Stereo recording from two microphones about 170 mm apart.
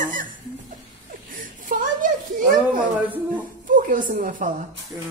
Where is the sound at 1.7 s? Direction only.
55° right (ahead or behind).